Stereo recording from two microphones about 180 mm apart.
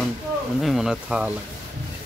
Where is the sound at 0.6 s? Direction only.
Centre (ahead or behind).